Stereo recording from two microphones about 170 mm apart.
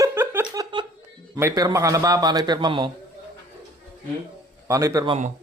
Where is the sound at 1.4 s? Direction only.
20° right (ahead or behind).